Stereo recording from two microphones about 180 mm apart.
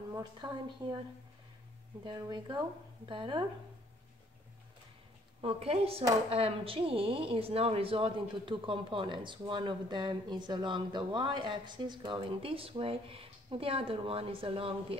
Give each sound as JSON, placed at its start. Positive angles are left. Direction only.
{"t": 0.1, "sound": "a woman's voice", "side_deg": -25}
{"t": 2.0, "sound": "a woman's voice", "side_deg": -25}
{"t": 5.4, "sound": "a woman's voice", "side_deg": -35}